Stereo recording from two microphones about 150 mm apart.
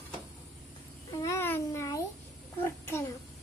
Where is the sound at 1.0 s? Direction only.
20° left (ahead or behind).